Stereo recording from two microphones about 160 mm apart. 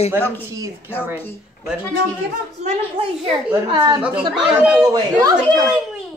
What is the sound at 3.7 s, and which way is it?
Speech, 30° right (ahead or behind).